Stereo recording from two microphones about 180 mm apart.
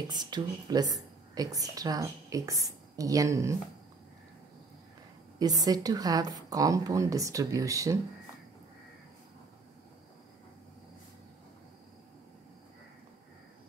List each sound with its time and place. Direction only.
0.1 s a woman's voice: 25° right (ahead or behind)
5.4 s a woman's voice: 20° right (ahead or behind)